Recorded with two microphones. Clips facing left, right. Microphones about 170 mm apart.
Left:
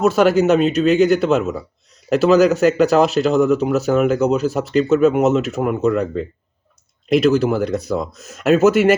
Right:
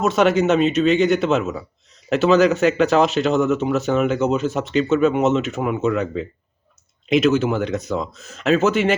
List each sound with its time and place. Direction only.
0.0 s speech: centre (ahead or behind)
7.1 s speech: 35° left (ahead or behind)
7.9 s speech: 10° left (ahead or behind)